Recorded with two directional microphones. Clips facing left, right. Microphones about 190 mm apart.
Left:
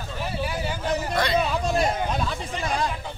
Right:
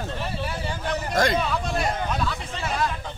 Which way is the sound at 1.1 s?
45° right (ahead or behind).